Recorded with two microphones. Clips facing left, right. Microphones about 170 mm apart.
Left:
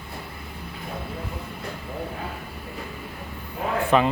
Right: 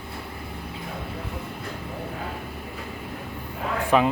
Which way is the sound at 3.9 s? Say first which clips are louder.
Even; 5° right (ahead or behind).